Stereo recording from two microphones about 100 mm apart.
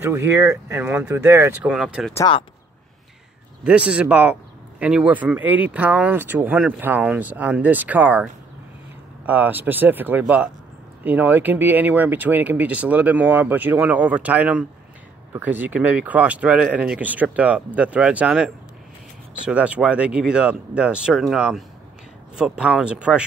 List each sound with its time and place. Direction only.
0.0 s speech: 25° right (ahead or behind)
1.7 s speech: 10° right (ahead or behind)
3.6 s speech: 10° right (ahead or behind)